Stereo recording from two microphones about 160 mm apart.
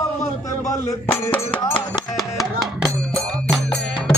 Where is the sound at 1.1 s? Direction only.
10° left (ahead or behind).